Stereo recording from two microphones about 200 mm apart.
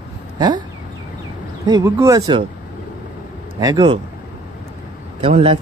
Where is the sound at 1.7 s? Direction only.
15° right (ahead or behind).